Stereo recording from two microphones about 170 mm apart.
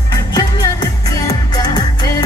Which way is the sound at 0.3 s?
25° left (ahead or behind).